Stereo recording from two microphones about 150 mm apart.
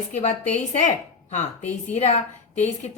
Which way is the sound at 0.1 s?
50° left (ahead or behind).